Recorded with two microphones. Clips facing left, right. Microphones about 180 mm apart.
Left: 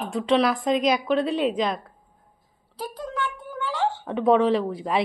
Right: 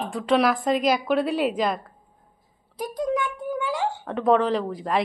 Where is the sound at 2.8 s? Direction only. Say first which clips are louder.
Right 5 dB; 15° right (ahead or behind).